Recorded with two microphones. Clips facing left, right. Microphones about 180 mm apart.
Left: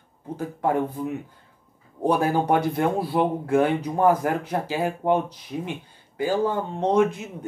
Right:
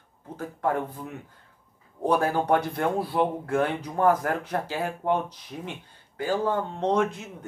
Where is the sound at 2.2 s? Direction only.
10° left (ahead or behind).